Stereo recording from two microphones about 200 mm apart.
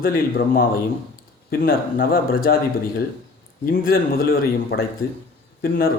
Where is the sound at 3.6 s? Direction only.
45° left (ahead or behind).